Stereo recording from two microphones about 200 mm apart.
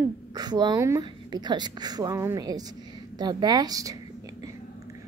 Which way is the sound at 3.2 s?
20° right (ahead or behind).